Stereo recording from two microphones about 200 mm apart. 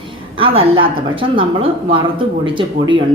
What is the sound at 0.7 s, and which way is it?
A man's voice, 25° right (ahead or behind).